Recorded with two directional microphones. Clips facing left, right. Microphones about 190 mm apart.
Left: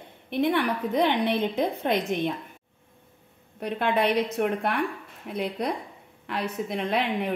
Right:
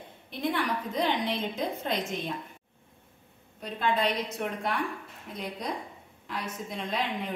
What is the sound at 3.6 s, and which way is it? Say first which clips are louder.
A woman's voice: left 4 dB; 65° left (ahead or behind).